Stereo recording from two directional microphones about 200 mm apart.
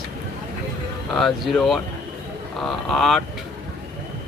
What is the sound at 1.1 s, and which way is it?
Speech, centre (ahead or behind).